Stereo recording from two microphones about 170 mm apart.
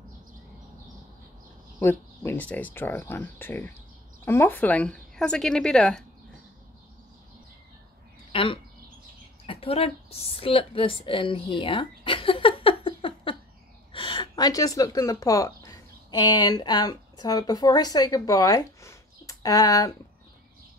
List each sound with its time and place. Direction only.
1.8 s a woman's voice: 15° left (ahead or behind)
8.3 s a sound: 30° left (ahead or behind)
9.5 s a woman's voice: 35° left (ahead or behind)